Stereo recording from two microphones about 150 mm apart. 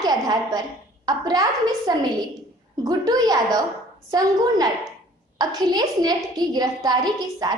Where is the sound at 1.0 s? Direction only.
25° right (ahead or behind).